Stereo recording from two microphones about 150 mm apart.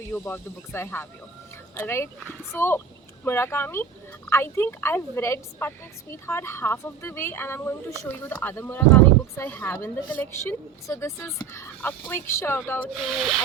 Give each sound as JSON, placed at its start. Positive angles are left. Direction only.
{"t": 0.1, "sound": "a woman's voice", "side_deg": 15}
{"t": 13.0, "sound": "speech", "side_deg": 0}